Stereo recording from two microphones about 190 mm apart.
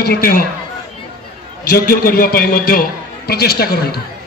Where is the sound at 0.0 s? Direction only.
55° left (ahead or behind).